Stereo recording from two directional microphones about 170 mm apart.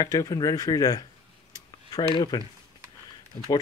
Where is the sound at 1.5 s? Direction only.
25° left (ahead or behind).